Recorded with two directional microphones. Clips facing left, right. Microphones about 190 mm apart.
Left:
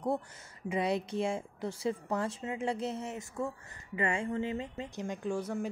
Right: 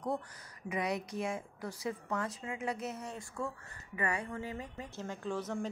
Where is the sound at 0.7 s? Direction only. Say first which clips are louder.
Left 4 dB; 30° left (ahead or behind).